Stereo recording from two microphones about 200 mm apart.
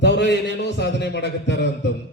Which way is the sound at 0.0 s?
60° left (ahead or behind).